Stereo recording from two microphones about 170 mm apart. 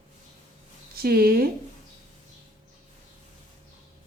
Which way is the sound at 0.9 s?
60° right (ahead or behind).